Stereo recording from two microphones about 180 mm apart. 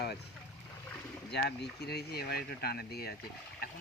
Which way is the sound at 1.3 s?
65° left (ahead or behind).